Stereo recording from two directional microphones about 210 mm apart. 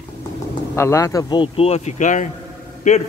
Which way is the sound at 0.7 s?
15° left (ahead or behind).